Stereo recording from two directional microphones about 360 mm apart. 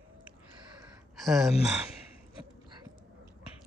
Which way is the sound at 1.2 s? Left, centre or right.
Centre.